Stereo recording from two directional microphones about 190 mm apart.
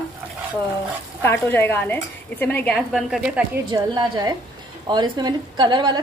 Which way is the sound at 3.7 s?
20° right (ahead or behind).